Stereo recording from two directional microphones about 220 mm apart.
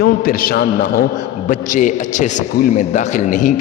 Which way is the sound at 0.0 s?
45° left (ahead or behind).